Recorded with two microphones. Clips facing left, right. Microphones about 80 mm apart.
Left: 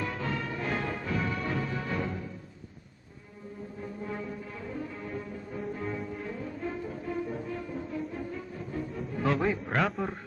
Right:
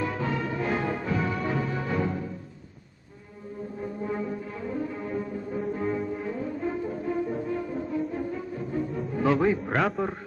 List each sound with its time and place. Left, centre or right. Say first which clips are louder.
0.0 s music: right 5 dB; centre
4.0 s music: right 6 dB; centre